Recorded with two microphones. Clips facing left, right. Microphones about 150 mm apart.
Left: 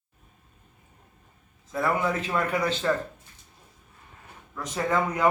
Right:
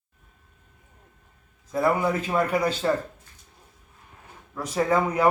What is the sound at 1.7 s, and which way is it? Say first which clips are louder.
A man's voice: right 3 dB; 10° right (ahead or behind).